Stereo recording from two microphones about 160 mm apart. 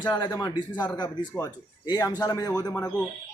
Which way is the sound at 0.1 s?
25° left (ahead or behind).